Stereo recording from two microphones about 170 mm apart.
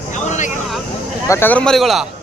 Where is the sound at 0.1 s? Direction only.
45° left (ahead or behind).